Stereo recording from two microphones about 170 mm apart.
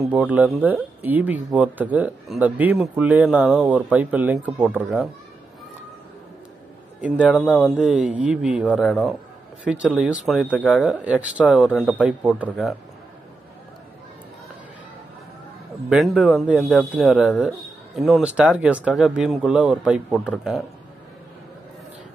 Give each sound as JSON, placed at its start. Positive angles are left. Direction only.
{"t": 0.0, "sound": "speech", "side_deg": -10}
{"t": 7.0, "sound": "speech", "side_deg": -10}
{"t": 7.3, "sound": "speech", "side_deg": 0}
{"t": 16.2, "sound": "speech", "side_deg": 0}